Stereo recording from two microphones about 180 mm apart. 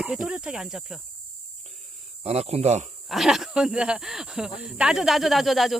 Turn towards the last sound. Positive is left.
turn(degrees=0)  # may be behind; listen again after turning